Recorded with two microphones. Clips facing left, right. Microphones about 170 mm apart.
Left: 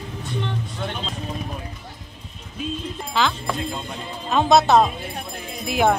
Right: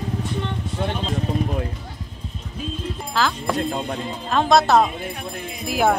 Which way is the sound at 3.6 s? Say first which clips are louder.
Right 5 dB; 50° right (ahead or behind).